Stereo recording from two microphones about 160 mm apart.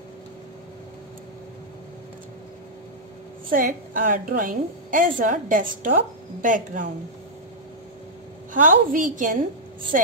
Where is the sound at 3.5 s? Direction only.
60° right (ahead or behind).